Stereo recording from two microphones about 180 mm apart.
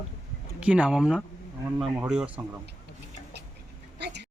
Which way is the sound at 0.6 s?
5° right (ahead or behind).